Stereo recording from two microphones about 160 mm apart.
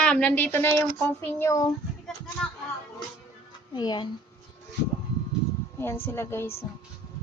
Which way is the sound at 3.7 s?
30° left (ahead or behind).